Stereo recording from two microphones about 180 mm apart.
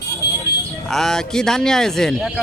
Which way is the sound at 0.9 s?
Centre (ahead or behind).